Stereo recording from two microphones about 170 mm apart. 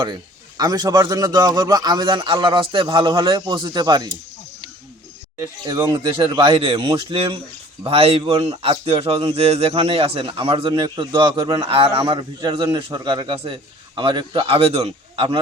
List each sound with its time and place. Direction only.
0.0 s speech: 25° right (ahead or behind)
5.4 s a man's voice: 20° right (ahead or behind)